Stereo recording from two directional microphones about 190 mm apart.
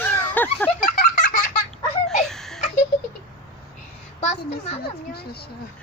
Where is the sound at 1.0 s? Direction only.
45° left (ahead or behind).